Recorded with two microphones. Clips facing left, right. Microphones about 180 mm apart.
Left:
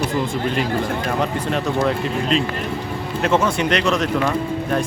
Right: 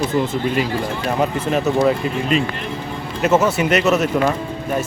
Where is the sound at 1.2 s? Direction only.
5° right (ahead or behind).